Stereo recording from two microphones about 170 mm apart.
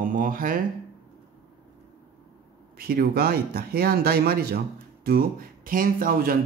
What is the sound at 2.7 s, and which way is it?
Speech, 60° right (ahead or behind).